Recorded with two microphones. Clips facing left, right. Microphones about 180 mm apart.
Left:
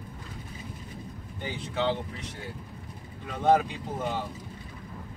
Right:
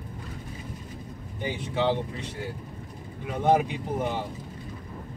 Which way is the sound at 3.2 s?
15° right (ahead or behind).